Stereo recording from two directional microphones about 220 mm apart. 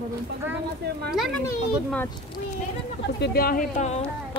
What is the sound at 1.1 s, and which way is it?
Speech, centre (ahead or behind).